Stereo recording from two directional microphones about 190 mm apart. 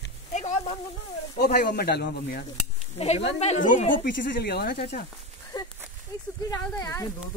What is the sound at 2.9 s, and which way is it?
Speech, 35° left (ahead or behind).